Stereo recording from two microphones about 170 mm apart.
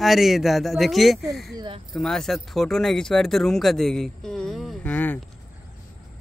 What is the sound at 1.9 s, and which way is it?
Speech, centre (ahead or behind).